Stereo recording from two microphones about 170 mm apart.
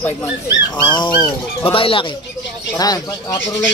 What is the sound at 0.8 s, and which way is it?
Speech, 25° left (ahead or behind).